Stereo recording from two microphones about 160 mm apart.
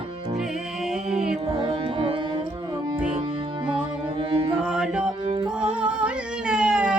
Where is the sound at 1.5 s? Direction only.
30° right (ahead or behind).